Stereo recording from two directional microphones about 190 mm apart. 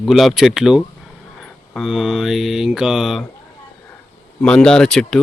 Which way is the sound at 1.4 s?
Centre (ahead or behind).